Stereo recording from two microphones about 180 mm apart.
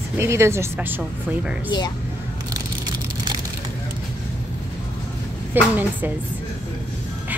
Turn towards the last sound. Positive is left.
turn(degrees=-10)  # may be behind; listen again after turning